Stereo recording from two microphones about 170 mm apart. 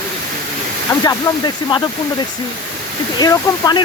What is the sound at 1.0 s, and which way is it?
Speech, 25° left (ahead or behind).